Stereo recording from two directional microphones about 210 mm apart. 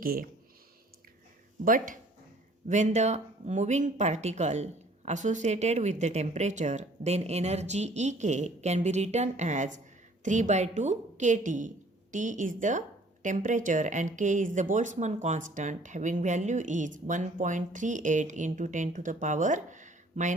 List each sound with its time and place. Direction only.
0.0 s speech: 45° right (ahead or behind)
1.6 s speech: 40° right (ahead or behind)